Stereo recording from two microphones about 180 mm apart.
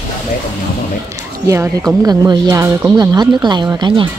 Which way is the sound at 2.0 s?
20° right (ahead or behind).